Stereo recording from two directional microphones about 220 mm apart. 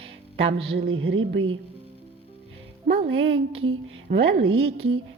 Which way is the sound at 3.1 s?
65° right (ahead or behind).